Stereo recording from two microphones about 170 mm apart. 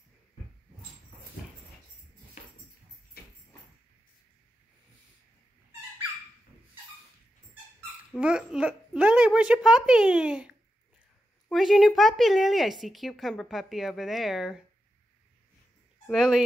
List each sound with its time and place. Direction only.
3.2 s a sound: 65° left (ahead or behind)
8.2 s speech: 5° right (ahead or behind)
11.5 s speech: centre (ahead or behind)
16.1 s speech: centre (ahead or behind)